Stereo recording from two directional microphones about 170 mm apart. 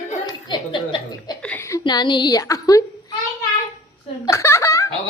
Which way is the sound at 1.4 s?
10° left (ahead or behind).